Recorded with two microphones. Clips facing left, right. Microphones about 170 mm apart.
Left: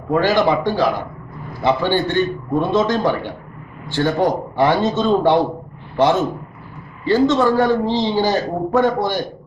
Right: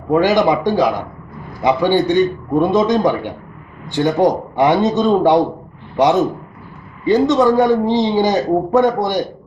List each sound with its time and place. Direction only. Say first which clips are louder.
0.2 s a man's voice: right 1 dB; 20° right (ahead or behind)
7.1 s speech: right 2 dB; 20° right (ahead or behind)